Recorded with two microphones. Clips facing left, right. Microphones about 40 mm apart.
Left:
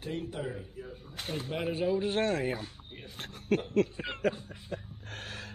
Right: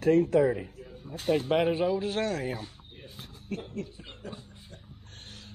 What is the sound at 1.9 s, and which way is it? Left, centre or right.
Speech, centre.